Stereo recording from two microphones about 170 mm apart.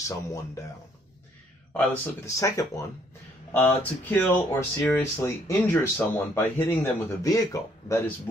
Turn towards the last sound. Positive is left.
turn(degrees=20)  # may be behind; listen again after turning